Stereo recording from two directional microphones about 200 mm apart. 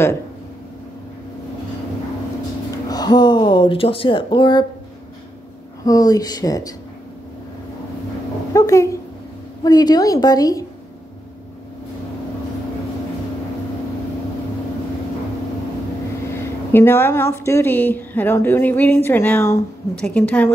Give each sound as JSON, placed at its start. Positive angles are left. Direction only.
{"t": 2.9, "sound": "speech", "side_deg": 20}
{"t": 5.9, "sound": "speech", "side_deg": 20}
{"t": 8.5, "sound": "speech", "side_deg": 15}
{"t": 16.7, "sound": "speech", "side_deg": 10}